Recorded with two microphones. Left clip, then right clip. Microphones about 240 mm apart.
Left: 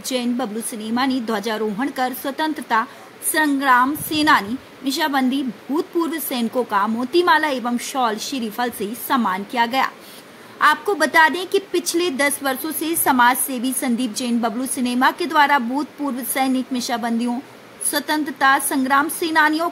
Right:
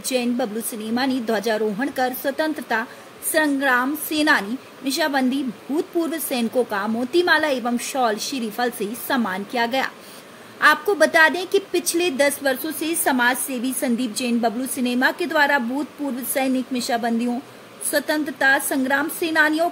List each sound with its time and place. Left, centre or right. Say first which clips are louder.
0.0 s a woman's voice: right 1 dB; centre